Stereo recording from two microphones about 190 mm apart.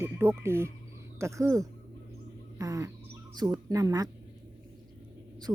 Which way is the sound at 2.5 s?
15° right (ahead or behind).